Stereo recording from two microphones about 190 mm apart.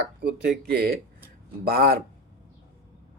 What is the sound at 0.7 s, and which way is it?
Speech, 55° right (ahead or behind).